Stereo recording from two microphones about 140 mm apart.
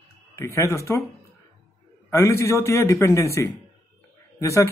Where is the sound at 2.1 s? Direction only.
20° left (ahead or behind).